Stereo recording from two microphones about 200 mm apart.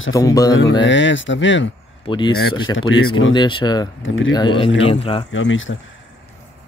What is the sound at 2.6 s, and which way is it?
Speech, 75° left (ahead or behind).